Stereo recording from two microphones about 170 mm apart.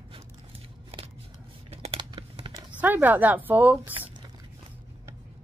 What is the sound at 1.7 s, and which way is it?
Crumpling, 35° right (ahead or behind).